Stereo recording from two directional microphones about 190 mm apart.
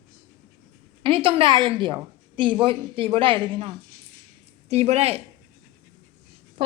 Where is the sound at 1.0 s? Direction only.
30° right (ahead or behind).